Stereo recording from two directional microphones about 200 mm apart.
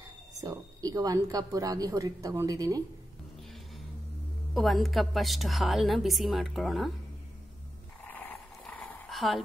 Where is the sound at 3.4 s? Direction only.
Centre (ahead or behind).